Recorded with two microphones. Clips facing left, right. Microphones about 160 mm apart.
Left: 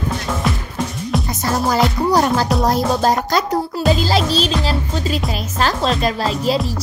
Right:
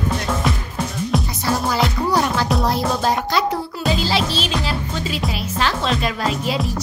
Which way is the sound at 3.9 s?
40° left (ahead or behind).